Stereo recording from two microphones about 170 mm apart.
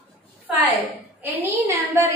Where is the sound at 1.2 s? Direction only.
15° right (ahead or behind).